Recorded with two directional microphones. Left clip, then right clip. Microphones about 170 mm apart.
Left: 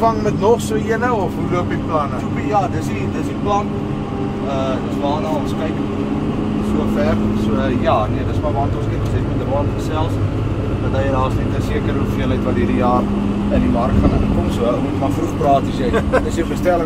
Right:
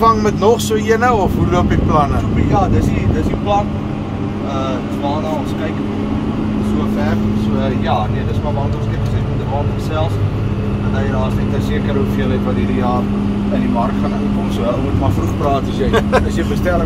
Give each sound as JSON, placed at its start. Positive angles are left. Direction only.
{"t": 0.0, "sound": "speech", "side_deg": -70}
{"t": 15.9, "sound": "speech", "side_deg": -70}